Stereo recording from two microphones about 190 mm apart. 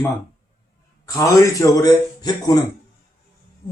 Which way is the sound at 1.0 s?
15° left (ahead or behind).